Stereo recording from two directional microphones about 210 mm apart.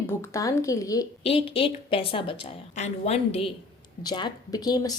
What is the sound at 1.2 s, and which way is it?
A woman's voice, 25° left (ahead or behind).